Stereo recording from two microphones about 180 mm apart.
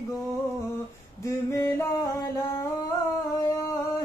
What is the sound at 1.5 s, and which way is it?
Music, 15° left (ahead or behind).